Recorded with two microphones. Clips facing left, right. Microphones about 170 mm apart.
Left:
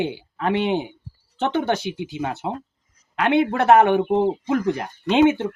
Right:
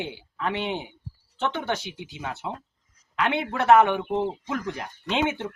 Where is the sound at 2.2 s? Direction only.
50° left (ahead or behind).